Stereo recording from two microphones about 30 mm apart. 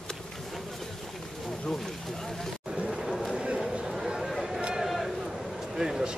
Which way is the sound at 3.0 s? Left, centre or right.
Centre.